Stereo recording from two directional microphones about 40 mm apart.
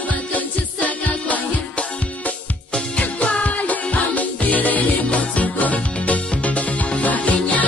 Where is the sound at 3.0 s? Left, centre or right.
Left.